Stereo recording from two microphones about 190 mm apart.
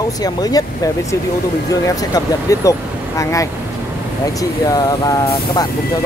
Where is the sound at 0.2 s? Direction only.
20° left (ahead or behind).